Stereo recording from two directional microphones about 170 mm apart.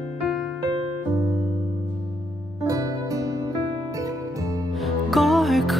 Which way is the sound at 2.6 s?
20° right (ahead or behind).